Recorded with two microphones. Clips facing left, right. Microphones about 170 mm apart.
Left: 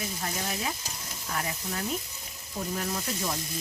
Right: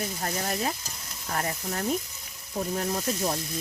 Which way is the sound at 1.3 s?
40° right (ahead or behind).